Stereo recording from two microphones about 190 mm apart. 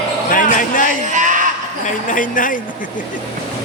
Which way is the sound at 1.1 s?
40° right (ahead or behind).